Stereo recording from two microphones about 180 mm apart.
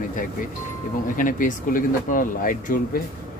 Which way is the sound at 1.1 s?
50° left (ahead or behind).